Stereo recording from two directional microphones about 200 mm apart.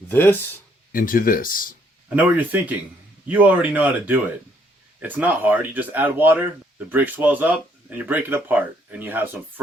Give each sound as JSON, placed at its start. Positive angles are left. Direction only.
{"t": 0.1, "sound": "speech", "side_deg": 10}
{"t": 0.9, "sound": "speech", "side_deg": 45}
{"t": 2.1, "sound": "speech", "side_deg": -10}